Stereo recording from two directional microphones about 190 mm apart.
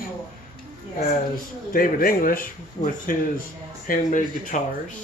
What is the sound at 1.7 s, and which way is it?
Speech, 50° left (ahead or behind).